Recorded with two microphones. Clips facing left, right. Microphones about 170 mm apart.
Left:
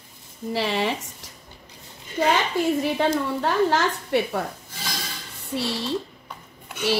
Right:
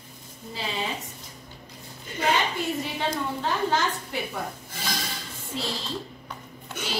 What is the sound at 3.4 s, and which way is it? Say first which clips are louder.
A woman's voice: left 4 dB; 70° left (ahead or behind).